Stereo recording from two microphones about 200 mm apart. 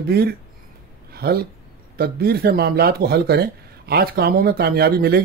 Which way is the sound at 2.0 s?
50° right (ahead or behind).